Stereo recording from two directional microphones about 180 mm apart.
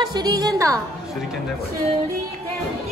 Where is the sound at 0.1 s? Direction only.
20° right (ahead or behind).